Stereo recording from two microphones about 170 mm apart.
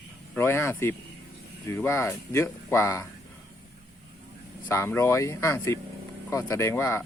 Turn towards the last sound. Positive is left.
turn(degrees=15)  # may be behind; listen again after turning